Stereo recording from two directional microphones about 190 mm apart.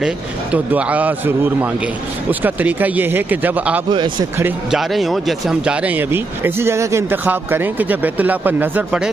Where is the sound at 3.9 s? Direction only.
25° right (ahead or behind).